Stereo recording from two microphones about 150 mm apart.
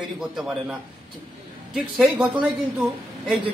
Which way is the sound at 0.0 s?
5° right (ahead or behind).